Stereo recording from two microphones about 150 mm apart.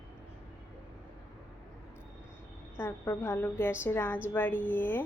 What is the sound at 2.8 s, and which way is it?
A woman's voice, 15° left (ahead or behind).